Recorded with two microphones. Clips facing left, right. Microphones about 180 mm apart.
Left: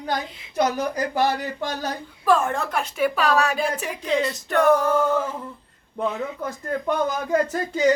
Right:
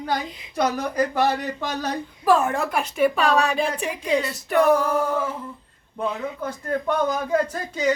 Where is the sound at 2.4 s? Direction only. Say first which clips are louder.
Right 1 dB; 5° right (ahead or behind).